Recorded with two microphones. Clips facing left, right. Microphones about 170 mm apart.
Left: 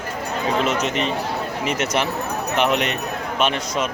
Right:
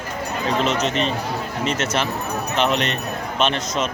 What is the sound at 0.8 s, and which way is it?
A man's voice, 15° left (ahead or behind).